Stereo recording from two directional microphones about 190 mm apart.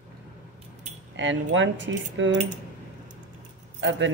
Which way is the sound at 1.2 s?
75° right (ahead or behind).